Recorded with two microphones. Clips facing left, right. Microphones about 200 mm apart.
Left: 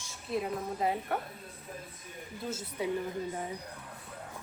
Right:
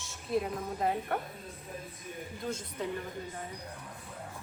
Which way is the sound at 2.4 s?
5° left (ahead or behind).